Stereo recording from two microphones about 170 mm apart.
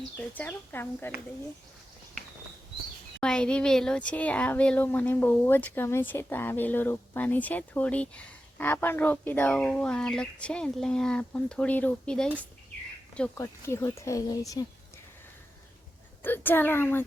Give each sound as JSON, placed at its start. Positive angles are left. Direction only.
{"t": 0.2, "sound": "speech", "side_deg": 10}
{"t": 3.2, "sound": "speech", "side_deg": 5}
{"t": 16.2, "sound": "speech", "side_deg": 10}